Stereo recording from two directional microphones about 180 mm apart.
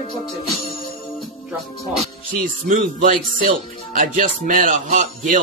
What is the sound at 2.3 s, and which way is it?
Speech, 50° right (ahead or behind).